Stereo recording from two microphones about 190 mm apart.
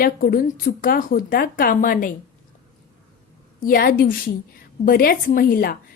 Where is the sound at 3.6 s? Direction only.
50° left (ahead or behind).